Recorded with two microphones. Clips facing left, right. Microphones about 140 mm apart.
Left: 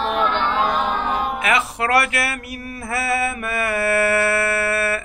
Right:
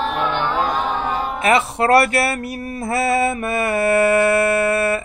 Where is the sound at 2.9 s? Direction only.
25° right (ahead or behind).